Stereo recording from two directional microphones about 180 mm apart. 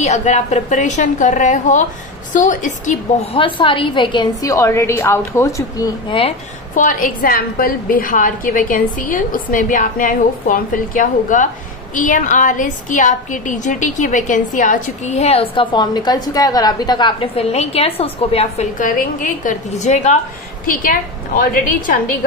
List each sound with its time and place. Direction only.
0.0 s a woman's voice: 40° left (ahead or behind)
3.3 s a woman's voice: 30° left (ahead or behind)
6.0 s a woman's voice: 30° left (ahead or behind)
6.7 s a woman's voice: 45° left (ahead or behind)